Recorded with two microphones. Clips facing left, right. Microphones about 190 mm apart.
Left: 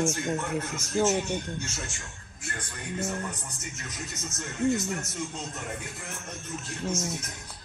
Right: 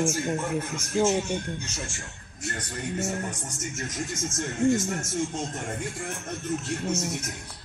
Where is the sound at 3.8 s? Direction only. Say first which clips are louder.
Right 8 dB; 45° right (ahead or behind).